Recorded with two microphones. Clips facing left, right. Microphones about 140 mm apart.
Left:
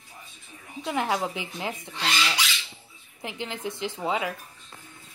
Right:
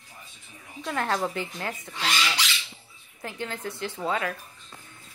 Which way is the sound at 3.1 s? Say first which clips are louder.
Even; 15° left (ahead or behind).